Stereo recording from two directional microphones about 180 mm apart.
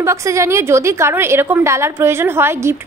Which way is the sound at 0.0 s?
15° right (ahead or behind).